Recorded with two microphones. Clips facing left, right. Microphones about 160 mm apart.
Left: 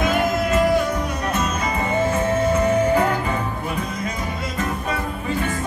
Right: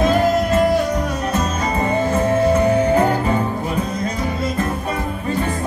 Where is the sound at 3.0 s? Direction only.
35° right (ahead or behind).